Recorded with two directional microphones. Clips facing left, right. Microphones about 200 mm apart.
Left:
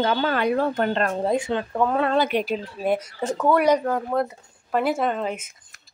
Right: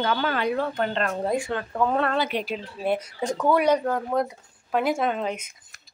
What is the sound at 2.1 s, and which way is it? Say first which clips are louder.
Speech: left 5 dB; 50° left (ahead or behind).